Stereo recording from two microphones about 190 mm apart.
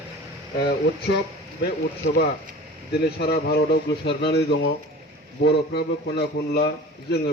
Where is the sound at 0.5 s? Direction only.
60° left (ahead or behind).